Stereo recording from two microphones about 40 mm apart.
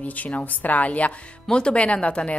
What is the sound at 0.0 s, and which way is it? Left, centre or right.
Speech, left.